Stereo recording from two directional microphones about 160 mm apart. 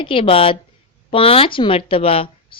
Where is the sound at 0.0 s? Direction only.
35° left (ahead or behind).